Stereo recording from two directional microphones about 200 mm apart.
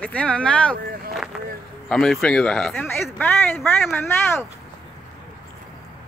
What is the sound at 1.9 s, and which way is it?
Speech, centre (ahead or behind).